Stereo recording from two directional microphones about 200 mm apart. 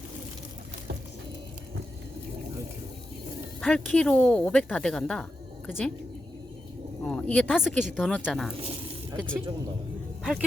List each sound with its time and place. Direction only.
3.6 s speech: 5° left (ahead or behind)
7.0 s speech: 5° left (ahead or behind)